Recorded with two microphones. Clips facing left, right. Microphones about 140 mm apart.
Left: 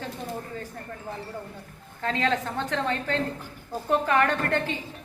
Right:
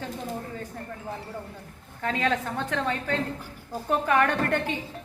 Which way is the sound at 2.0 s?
10° right (ahead or behind).